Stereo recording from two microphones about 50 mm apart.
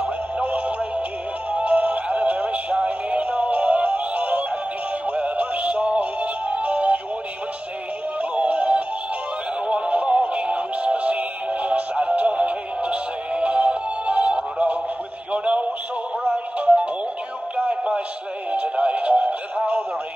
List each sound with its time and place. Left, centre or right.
0.0 s music: right
1.5 s synthetic singing: right
8.2 s synthetic singing: right
15.3 s a sound: right
16.5 s music: right
18.5 s synthetic singing: right